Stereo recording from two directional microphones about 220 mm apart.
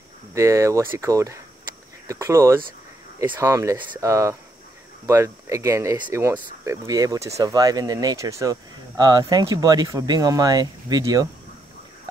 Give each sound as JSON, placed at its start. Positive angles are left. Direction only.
{"t": 0.3, "sound": "speech", "side_deg": -15}